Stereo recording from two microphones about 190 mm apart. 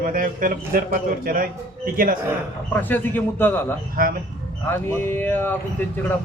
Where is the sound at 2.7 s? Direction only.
10° left (ahead or behind).